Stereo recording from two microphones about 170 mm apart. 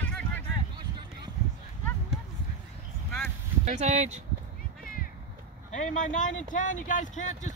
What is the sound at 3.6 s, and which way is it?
Speech, 40° right (ahead or behind).